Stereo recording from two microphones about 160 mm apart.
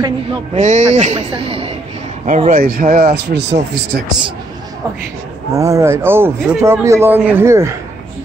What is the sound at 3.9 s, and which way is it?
Speech, 75° right (ahead or behind).